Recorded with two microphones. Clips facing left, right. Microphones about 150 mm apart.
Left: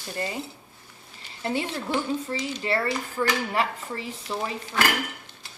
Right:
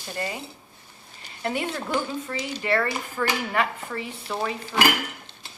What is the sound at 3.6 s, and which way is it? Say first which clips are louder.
Speech: right 1 dB; 30° left (ahead or behind).